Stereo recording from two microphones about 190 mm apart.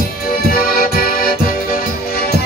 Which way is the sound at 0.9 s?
50° left (ahead or behind).